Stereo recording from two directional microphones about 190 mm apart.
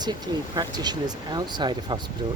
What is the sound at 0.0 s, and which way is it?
Speech, 20° right (ahead or behind).